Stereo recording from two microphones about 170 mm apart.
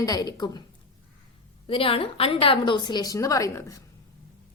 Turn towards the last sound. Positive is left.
turn(degrees=20)  # may be behind; listen again after turning